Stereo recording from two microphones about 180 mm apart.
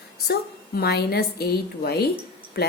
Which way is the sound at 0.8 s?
60° left (ahead or behind).